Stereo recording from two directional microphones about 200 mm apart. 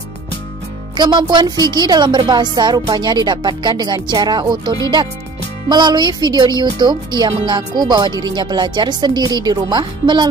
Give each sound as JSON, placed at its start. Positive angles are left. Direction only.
{"t": 0.9, "sound": "a woman's voice", "side_deg": -20}